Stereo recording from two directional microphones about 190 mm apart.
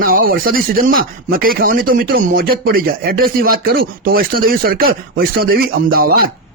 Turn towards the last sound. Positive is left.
turn(degrees=-50)  # may be behind; listen again after turning